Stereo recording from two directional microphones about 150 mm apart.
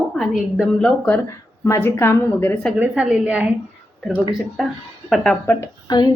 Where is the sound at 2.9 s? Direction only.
5° right (ahead or behind).